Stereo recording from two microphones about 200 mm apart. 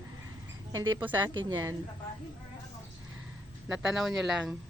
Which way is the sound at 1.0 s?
10° right (ahead or behind).